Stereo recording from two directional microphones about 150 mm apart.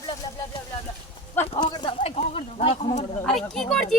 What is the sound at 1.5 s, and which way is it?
Speech, 30° left (ahead or behind).